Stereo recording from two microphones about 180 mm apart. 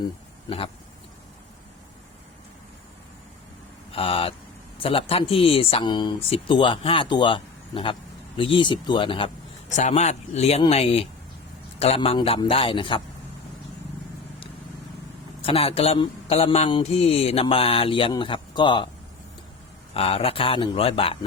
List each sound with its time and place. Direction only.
0.4 s speech: 30° left (ahead or behind)
3.9 s speech: 30° left (ahead or behind)
9.6 s speech: 40° left (ahead or behind)
15.4 s speech: 30° left (ahead or behind)
19.9 s speech: 30° left (ahead or behind)